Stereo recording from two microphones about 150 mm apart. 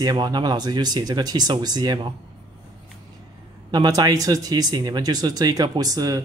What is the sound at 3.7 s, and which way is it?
Speech, 25° right (ahead or behind).